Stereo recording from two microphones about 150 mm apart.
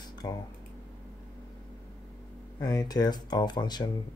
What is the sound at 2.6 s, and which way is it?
Speech, 25° left (ahead or behind).